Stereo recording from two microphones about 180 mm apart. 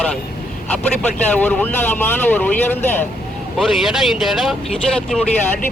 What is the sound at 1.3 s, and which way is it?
Speech, 10° left (ahead or behind).